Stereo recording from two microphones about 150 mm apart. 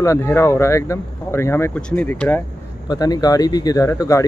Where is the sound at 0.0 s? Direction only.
20° left (ahead or behind).